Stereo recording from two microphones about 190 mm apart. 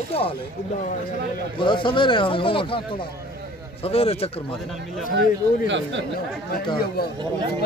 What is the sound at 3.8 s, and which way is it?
Speech, 30° left (ahead or behind).